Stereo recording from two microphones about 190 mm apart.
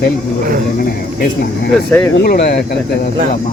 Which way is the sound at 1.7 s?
5° left (ahead or behind).